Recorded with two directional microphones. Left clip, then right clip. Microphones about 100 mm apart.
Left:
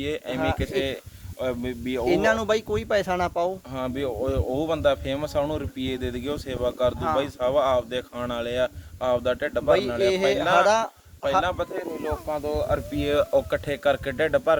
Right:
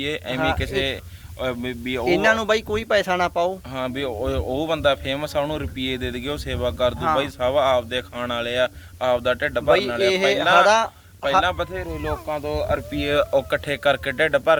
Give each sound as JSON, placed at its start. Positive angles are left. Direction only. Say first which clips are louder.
{"t": 0.0, "sound": "speech", "louder": "right 3 dB", "side_deg": 30}
{"t": 0.3, "sound": "speech", "louder": "right 5 dB", "side_deg": -25}
{"t": 0.6, "sound": "speech", "louder": "right 3 dB", "side_deg": 30}
{"t": 2.0, "sound": "speech", "louder": "right 3 dB", "side_deg": -10}
{"t": 3.8, "sound": "speech", "louder": "even", "side_deg": 30}
{"t": 9.6, "sound": "speech", "louder": "right 3 dB", "side_deg": -10}
{"t": 11.4, "sound": "speech", "louder": "right 3 dB", "side_deg": 35}
{"t": 13.3, "sound": "speech", "louder": "right 2 dB", "side_deg": 25}